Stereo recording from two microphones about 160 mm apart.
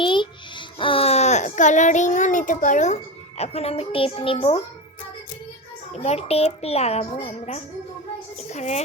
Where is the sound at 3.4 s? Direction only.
40° left (ahead or behind).